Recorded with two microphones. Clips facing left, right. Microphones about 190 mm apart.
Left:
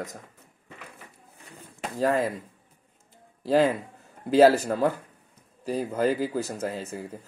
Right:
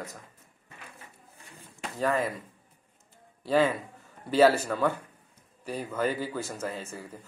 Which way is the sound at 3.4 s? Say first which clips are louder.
Left 3 dB; 35° left (ahead or behind).